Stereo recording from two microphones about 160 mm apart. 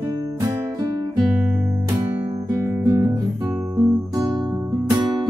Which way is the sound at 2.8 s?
20° right (ahead or behind).